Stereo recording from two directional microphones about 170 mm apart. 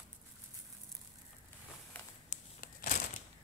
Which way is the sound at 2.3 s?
50° left (ahead or behind).